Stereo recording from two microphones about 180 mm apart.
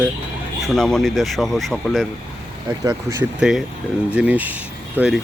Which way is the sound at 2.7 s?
15° right (ahead or behind).